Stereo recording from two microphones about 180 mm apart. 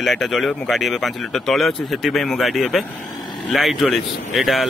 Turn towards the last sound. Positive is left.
turn(degrees=0)  # may be behind; listen again after turning